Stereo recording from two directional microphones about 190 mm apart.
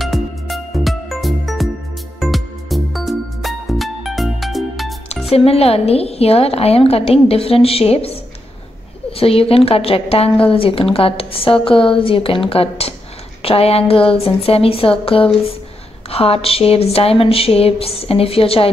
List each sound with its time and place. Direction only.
0.0 s music: centre (ahead or behind)
5.3 s a woman's voice: 30° left (ahead or behind)